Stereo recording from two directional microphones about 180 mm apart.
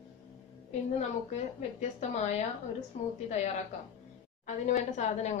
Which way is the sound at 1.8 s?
40° left (ahead or behind).